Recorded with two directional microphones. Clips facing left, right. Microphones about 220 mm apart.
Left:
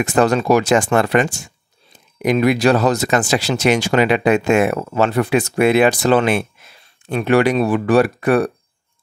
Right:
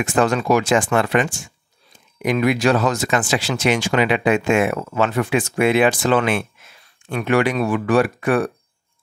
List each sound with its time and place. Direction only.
0.0 s speech: 40° left (ahead or behind)
6.8 s speech: 25° left (ahead or behind)